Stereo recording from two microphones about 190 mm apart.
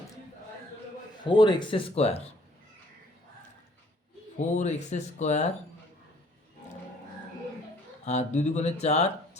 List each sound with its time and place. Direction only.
1.2 s speech: 25° left (ahead or behind)
4.4 s speech: 40° left (ahead or behind)
8.0 s speech: 35° left (ahead or behind)